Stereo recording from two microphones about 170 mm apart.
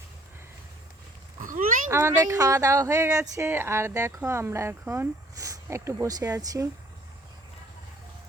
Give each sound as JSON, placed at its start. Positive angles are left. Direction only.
{"t": 1.4, "sound": "speech", "side_deg": -50}
{"t": 1.9, "sound": "speech", "side_deg": -15}